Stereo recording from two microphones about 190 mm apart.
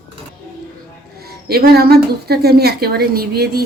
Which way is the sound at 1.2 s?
55° right (ahead or behind).